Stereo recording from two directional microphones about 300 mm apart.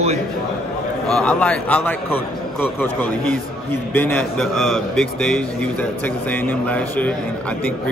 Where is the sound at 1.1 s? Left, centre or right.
Centre.